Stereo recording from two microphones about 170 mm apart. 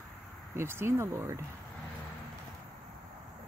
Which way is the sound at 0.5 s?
15° right (ahead or behind).